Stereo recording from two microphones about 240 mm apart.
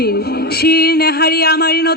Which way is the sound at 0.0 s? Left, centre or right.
Left.